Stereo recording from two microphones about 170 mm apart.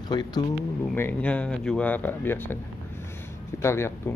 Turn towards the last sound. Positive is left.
turn(degrees=15)  # may be behind; listen again after turning